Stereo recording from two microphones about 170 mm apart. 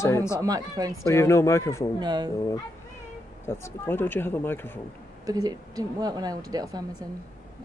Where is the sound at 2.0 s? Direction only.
25° right (ahead or behind).